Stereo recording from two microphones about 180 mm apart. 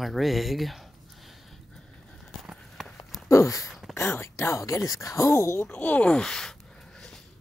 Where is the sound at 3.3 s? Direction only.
15° left (ahead or behind).